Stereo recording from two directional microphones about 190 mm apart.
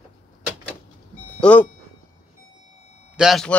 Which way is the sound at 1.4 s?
10° left (ahead or behind).